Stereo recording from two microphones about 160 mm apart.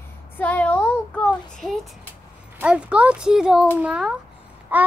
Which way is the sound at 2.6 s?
5° right (ahead or behind).